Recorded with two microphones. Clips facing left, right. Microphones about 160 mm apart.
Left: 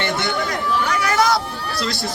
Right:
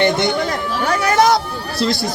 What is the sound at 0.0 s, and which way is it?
Chatter, 15° right (ahead or behind).